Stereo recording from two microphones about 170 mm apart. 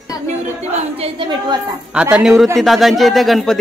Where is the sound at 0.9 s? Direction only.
30° right (ahead or behind).